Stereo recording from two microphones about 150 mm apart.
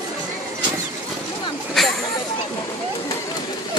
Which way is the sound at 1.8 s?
Centre (ahead or behind).